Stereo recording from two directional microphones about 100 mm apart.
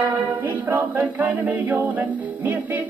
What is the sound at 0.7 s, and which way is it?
A capella, 15° right (ahead or behind).